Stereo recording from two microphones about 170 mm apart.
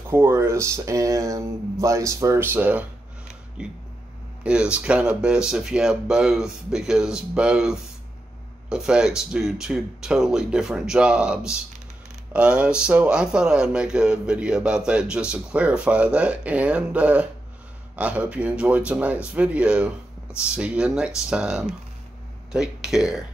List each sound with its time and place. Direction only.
0.1 s speech: 15° right (ahead or behind)